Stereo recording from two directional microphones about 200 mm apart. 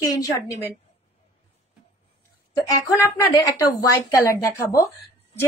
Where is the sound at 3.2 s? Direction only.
20° left (ahead or behind).